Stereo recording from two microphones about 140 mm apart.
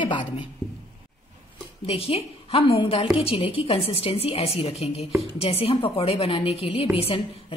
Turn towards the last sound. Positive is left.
turn(degrees=45)  # may be behind; listen again after turning